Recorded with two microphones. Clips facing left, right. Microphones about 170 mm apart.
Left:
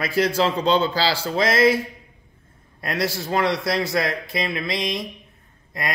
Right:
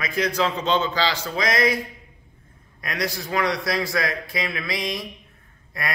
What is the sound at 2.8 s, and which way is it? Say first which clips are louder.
A man's voice: left 3 dB; 30° left (ahead or behind).